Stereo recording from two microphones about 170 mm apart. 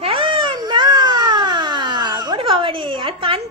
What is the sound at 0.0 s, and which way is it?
Baby cry, 30° right (ahead or behind).